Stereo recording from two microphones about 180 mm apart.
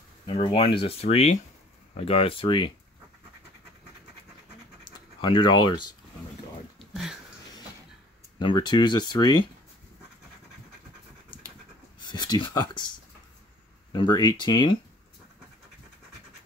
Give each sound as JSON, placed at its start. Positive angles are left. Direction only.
{"t": 0.3, "sound": "speech", "side_deg": 30}
{"t": 4.8, "sound": "speech", "side_deg": 25}
{"t": 6.8, "sound": "a sound", "side_deg": 0}
{"t": 8.4, "sound": "speech", "side_deg": 25}
{"t": 12.0, "sound": "speech", "side_deg": 25}
{"t": 13.9, "sound": "speech", "side_deg": 25}